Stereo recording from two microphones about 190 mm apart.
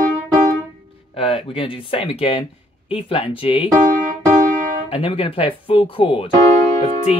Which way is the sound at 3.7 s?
40° right (ahead or behind).